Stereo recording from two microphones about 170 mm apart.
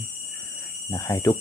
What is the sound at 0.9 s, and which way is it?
Speech, 15° left (ahead or behind).